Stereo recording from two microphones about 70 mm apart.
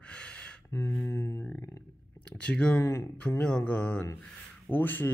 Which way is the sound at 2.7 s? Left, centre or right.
Left.